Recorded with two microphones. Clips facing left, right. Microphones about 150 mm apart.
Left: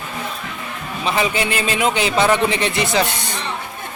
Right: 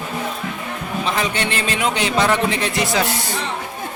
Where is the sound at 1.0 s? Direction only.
5° left (ahead or behind).